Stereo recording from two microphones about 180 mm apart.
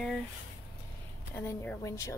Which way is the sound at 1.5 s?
15° left (ahead or behind).